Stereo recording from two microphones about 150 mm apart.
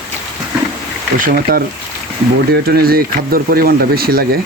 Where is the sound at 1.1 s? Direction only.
75° right (ahead or behind); by 4.4 s 90° right.